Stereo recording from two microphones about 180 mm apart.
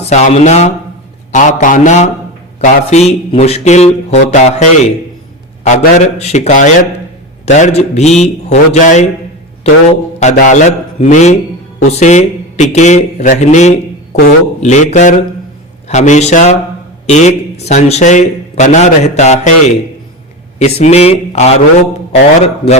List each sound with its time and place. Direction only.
0.1 s a man's voice: 40° left (ahead or behind)
1.3 s mantra: 45° left (ahead or behind)
2.6 s a man's voice: 35° left (ahead or behind)